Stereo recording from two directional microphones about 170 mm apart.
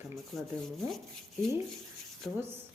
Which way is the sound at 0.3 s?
Centre (ahead or behind).